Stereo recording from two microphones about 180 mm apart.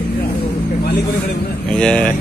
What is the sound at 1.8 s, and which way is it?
Speech, 5° left (ahead or behind).